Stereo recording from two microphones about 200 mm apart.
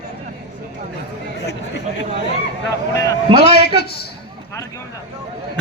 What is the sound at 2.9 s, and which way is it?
Speech, 15° left (ahead or behind).